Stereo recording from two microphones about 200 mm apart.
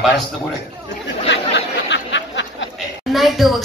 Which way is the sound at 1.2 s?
65° left (ahead or behind).